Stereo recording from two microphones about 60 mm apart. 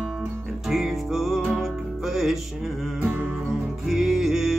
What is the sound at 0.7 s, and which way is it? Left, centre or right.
Music, centre.